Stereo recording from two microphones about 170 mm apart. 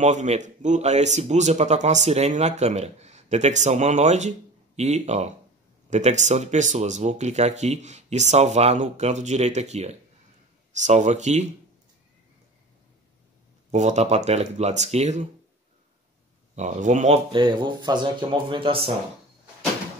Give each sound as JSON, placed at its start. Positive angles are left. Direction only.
{"t": 0.0, "sound": "speech", "side_deg": -45}
{"t": 13.7, "sound": "speech", "side_deg": -40}
{"t": 16.5, "sound": "speech", "side_deg": -45}
{"t": 17.3, "sound": "speech", "side_deg": -30}